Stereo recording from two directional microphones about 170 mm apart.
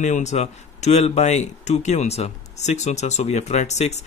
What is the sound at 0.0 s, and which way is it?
Speech, 45° left (ahead or behind).